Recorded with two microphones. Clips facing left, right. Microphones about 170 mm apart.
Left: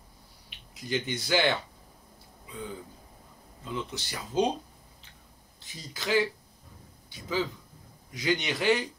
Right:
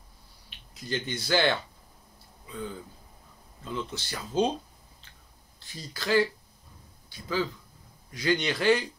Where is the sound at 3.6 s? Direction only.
15° left (ahead or behind).